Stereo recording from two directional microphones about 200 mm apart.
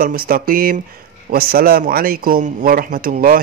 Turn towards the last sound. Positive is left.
turn(degrees=-45)  # may be behind; listen again after turning